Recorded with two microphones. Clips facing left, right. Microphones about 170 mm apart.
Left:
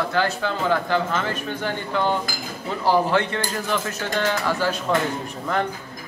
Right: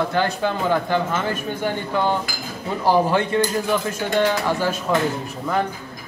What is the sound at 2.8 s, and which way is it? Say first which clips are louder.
A man's voice: right 2 dB; 15° right (ahead or behind).